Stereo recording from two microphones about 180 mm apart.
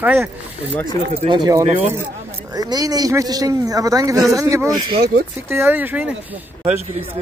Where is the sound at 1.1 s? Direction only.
30° right (ahead or behind); by 6.4 s 10° right (ahead or behind).